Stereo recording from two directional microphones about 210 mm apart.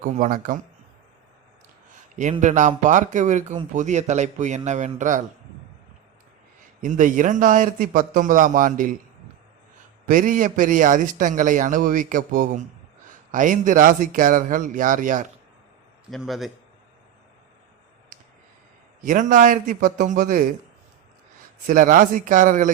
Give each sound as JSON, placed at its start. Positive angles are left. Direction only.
{"t": 0.0, "sound": "a man's voice", "side_deg": -35}
{"t": 2.4, "sound": "a man's voice", "side_deg": -35}
{"t": 6.8, "sound": "a man's voice", "side_deg": -35}
{"t": 10.1, "sound": "a man's voice", "side_deg": -40}
{"t": 16.0, "sound": "a man's voice", "side_deg": 0}
{"t": 19.0, "sound": "a man's voice", "side_deg": -40}
{"t": 21.7, "sound": "a man's voice", "side_deg": -40}